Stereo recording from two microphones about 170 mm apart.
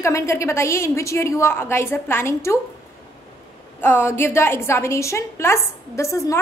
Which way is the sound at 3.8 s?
15° left (ahead or behind).